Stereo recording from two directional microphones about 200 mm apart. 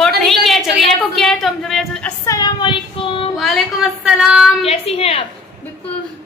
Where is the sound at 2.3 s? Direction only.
20° left (ahead or behind).